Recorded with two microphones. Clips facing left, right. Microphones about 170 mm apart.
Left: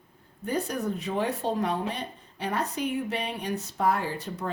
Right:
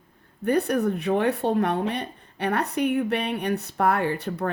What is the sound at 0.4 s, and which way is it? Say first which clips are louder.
Speech: right 7 dB; 65° right (ahead or behind).